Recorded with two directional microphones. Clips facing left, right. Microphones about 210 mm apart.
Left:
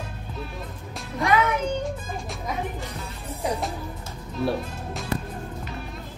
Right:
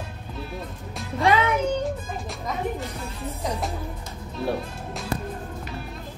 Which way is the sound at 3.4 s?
10° left (ahead or behind).